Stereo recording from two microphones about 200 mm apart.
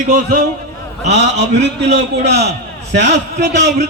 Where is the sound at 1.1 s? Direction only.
60° right (ahead or behind).